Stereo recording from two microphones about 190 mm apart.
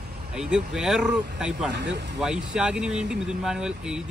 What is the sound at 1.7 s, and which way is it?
Speech, 65° right (ahead or behind).